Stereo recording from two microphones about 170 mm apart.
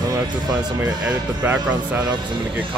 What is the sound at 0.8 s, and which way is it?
Speech, 10° right (ahead or behind).